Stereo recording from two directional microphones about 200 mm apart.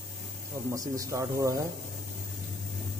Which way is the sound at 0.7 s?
15° right (ahead or behind).